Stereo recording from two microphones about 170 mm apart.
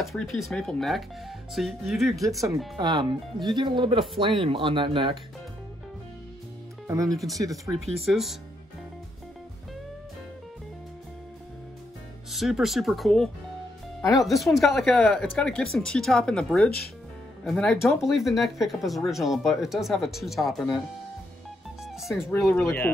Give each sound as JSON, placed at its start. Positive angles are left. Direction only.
{"t": 0.0, "sound": "speech", "side_deg": 0}
{"t": 2.8, "sound": "speech", "side_deg": -25}
{"t": 6.9, "sound": "speech", "side_deg": -20}
{"t": 7.8, "sound": "speech", "side_deg": 0}
{"t": 12.3, "sound": "speech", "side_deg": 0}
{"t": 21.8, "sound": "music", "side_deg": 0}
{"t": 22.4, "sound": "speech", "side_deg": 10}